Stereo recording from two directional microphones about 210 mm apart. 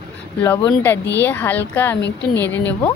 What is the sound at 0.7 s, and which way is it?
Speech, 10° left (ahead or behind).